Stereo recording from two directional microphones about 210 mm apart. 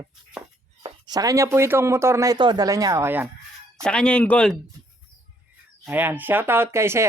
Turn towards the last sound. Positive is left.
turn(degrees=-10)  # may be behind; listen again after turning